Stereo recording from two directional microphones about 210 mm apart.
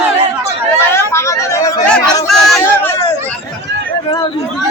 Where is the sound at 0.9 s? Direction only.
15° left (ahead or behind).